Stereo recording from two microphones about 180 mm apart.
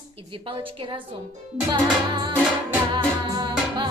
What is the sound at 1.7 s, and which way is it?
Music, 25° right (ahead or behind).